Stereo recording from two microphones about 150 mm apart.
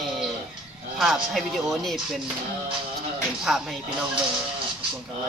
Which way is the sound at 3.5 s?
Centre (ahead or behind).